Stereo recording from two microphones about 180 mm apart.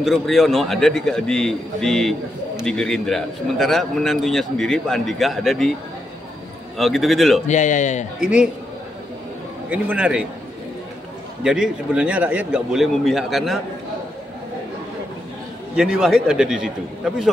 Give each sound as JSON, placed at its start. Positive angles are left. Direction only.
{"t": 0.0, "sound": "a man's voice", "side_deg": 0}
{"t": 6.8, "sound": "a man's voice", "side_deg": 0}
{"t": 7.4, "sound": "speech", "side_deg": 40}
{"t": 8.2, "sound": "a man's voice", "side_deg": -5}
{"t": 9.7, "sound": "a man's voice", "side_deg": -5}
{"t": 11.4, "sound": "a man's voice", "side_deg": -5}
{"t": 15.7, "sound": "a man's voice", "side_deg": -5}